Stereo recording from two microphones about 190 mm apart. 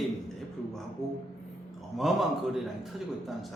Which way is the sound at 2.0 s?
Centre (ahead or behind).